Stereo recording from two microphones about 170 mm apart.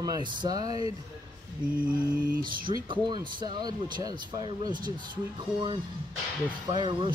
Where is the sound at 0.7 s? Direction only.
35° left (ahead or behind).